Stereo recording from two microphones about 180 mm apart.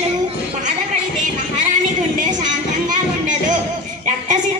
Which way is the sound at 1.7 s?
45° right (ahead or behind).